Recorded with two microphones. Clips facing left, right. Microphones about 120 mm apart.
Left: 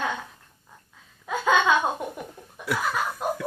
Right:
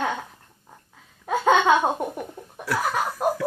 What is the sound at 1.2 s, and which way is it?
Laughter, 35° right (ahead or behind).